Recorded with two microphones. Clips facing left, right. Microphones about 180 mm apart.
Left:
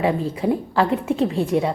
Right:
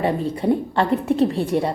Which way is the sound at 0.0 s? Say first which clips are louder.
Even; centre (ahead or behind).